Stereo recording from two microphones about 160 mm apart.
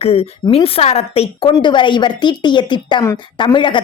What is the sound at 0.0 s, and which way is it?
A woman's voice, 40° left (ahead or behind).